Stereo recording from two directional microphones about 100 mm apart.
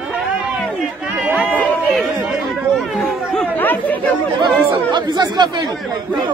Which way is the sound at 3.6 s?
20° left (ahead or behind).